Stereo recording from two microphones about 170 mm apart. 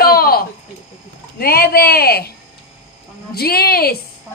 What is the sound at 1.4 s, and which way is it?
Speech, 65° left (ahead or behind).